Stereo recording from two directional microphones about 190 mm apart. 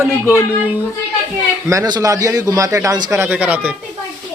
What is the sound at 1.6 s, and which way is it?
A man's voice, 20° right (ahead or behind).